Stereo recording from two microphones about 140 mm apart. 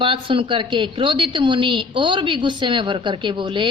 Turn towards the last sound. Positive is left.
turn(degrees=-35)  # may be behind; listen again after turning